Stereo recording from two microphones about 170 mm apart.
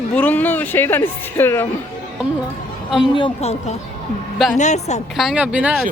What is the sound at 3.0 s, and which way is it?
A woman's voice, 30° left (ahead or behind).